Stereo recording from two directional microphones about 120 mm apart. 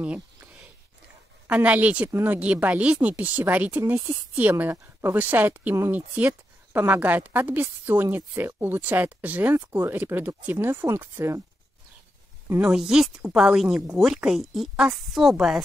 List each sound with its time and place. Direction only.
0.0 s a sound: 10° right (ahead or behind)
1.5 s speech: 10° right (ahead or behind)
12.6 s a woman's voice: 5° right (ahead or behind)